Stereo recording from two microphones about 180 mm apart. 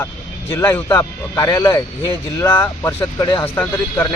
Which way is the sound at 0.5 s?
15° left (ahead or behind).